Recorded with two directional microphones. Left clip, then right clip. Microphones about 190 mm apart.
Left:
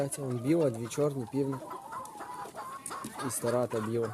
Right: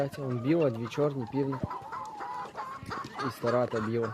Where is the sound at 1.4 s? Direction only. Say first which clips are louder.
Right 2 dB; 50° left (ahead or behind).